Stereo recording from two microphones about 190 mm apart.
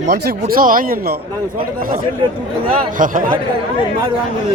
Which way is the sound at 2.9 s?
45° right (ahead or behind).